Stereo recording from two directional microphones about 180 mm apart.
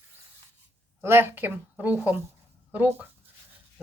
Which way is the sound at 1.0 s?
15° right (ahead or behind).